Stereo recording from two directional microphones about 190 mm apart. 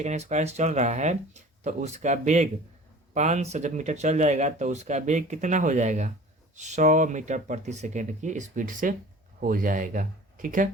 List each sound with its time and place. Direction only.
0.0 s speech: 35° right (ahead or behind)